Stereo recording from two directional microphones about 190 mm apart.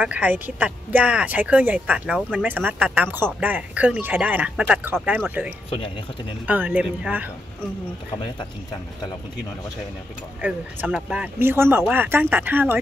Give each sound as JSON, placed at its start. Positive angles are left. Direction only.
{"t": 0.0, "sound": "a woman's voice", "side_deg": -5}
{"t": 10.4, "sound": "a woman's voice", "side_deg": -10}